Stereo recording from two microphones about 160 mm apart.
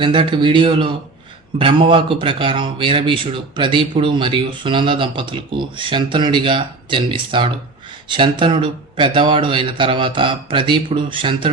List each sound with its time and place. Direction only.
0.0 s speech: 30° right (ahead or behind)